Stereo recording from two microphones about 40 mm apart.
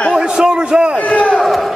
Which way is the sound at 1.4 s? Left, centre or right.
Centre.